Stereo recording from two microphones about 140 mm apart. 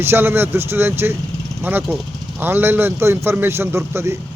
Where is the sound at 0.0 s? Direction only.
15° right (ahead or behind).